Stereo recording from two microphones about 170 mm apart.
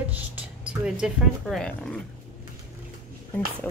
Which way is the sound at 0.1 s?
10° right (ahead or behind).